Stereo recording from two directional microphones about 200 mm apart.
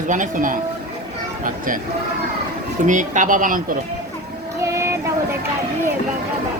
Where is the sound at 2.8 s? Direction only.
40° right (ahead or behind).